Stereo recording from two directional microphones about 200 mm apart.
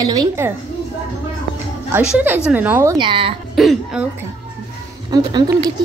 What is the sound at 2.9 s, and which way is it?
Speech, 25° right (ahead or behind).